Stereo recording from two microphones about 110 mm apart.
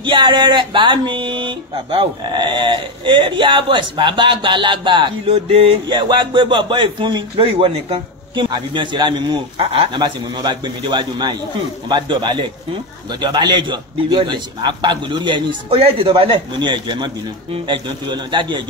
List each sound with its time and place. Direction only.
0.0 s speech: 45° right (ahead or behind)
5.2 s speech: 65° right (ahead or behind)
8.5 s speech: 45° right (ahead or behind)
9.6 s speech: 55° right (ahead or behind)